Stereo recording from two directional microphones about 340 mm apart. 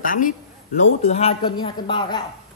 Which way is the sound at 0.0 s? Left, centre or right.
Left.